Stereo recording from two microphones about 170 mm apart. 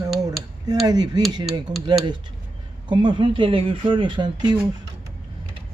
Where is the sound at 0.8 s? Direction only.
25° right (ahead or behind).